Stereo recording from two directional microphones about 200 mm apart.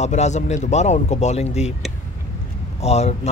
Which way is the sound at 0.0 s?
35° left (ahead or behind).